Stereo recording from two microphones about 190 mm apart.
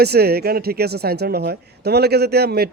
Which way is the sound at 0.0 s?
55° right (ahead or behind).